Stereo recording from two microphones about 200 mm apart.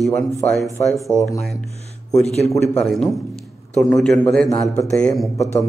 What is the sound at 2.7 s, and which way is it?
A man's voice, centre (ahead or behind).